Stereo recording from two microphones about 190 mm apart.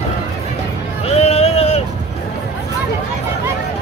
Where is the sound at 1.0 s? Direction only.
35° left (ahead or behind).